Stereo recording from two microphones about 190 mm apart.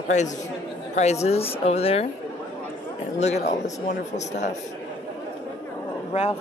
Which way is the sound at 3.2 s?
35° left (ahead or behind).